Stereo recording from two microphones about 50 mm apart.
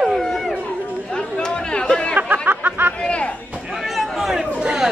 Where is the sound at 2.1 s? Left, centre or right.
Right.